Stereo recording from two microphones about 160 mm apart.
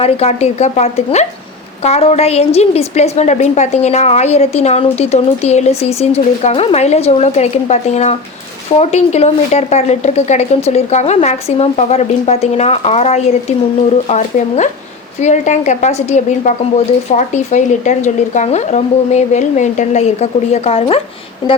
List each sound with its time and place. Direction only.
0.0 s a woman's voice: 40° left (ahead or behind)